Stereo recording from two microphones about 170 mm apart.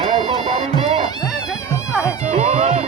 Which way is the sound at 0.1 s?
40° right (ahead or behind).